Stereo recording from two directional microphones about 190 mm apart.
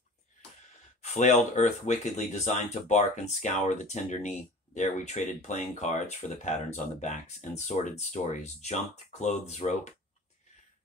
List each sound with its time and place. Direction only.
1.0 s speech: 40° left (ahead or behind)